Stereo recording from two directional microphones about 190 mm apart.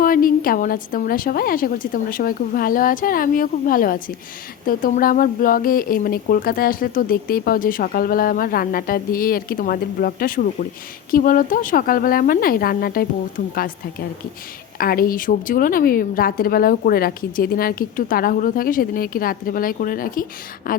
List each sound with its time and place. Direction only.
0.0 s speech: 50° left (ahead or behind)
14.8 s speech: 50° left (ahead or behind)